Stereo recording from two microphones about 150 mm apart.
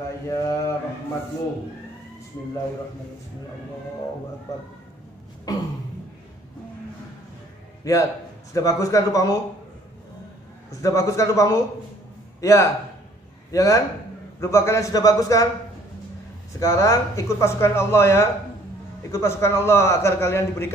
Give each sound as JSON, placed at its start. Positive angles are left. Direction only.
{"t": 0.3, "sound": "speech", "side_deg": 20}
{"t": 5.5, "sound": "speech", "side_deg": 25}
{"t": 7.8, "sound": "a man's voice", "side_deg": 20}
{"t": 10.7, "sound": "a man's voice", "side_deg": 20}
{"t": 16.5, "sound": "a man's voice", "side_deg": 20}